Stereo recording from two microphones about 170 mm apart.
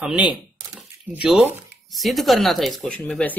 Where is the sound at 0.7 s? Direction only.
5° right (ahead or behind).